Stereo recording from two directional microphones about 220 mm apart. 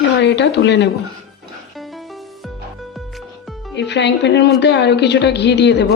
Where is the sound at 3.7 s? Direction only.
50° left (ahead or behind).